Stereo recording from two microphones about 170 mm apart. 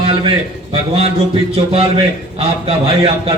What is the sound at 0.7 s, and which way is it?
A man's voice, 35° right (ahead or behind).